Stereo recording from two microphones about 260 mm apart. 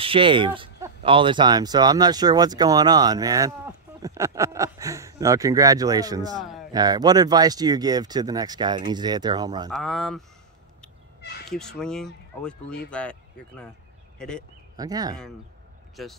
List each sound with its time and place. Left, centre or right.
0.0 s speech: centre
9.7 s speech: centre
11.2 s crow: left
11.5 s speech: centre
14.8 s speech: centre
16.0 s speech: centre